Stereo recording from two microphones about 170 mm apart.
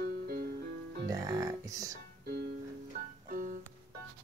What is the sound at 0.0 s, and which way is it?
Music, 60° right (ahead or behind).